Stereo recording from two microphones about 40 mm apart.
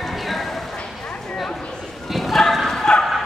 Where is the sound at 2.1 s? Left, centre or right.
Centre.